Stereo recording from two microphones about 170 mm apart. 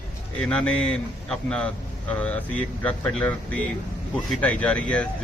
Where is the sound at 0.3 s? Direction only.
5° left (ahead or behind).